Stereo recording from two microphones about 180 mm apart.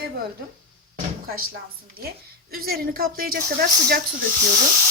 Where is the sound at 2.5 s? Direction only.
60° right (ahead or behind).